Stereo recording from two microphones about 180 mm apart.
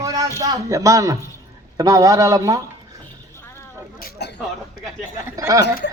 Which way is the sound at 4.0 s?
60° left (ahead or behind).